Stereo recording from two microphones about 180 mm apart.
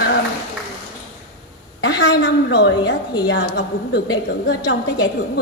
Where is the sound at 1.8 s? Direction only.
85° left.